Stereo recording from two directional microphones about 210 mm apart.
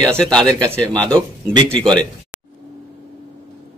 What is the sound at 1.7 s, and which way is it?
Speech, 5° left (ahead or behind).